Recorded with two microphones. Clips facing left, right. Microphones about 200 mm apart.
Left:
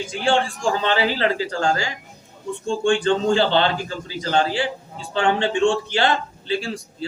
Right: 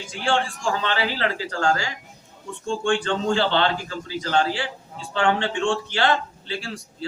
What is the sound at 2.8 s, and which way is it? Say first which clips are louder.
A man's voice: left 5 dB; 15° left (ahead or behind).